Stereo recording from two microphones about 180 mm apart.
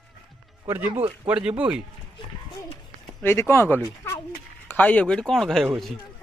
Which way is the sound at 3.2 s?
15° left (ahead or behind).